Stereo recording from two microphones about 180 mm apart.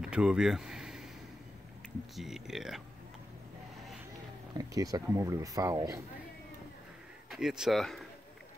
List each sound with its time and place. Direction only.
0.0 s a sound: 5° right (ahead or behind)
2.1 s speech: centre (ahead or behind)
4.6 s speech: 20° right (ahead or behind)
7.2 s speech: centre (ahead or behind)